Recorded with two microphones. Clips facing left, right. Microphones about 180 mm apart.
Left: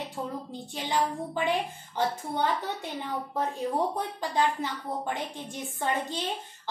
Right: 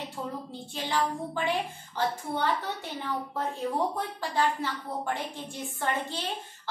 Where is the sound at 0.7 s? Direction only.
15° left (ahead or behind).